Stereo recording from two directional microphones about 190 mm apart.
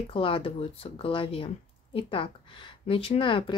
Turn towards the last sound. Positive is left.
turn(degrees=25)  # may be behind; listen again after turning